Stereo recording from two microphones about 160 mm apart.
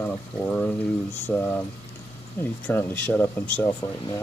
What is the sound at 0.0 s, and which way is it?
Speech, 10° left (ahead or behind).